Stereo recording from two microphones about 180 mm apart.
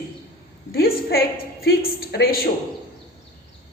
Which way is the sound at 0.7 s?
55° left (ahead or behind).